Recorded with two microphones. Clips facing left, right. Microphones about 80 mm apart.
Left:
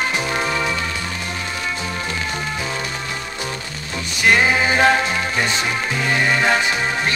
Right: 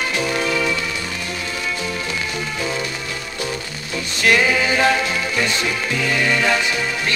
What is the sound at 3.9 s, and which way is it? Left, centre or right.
Music, centre.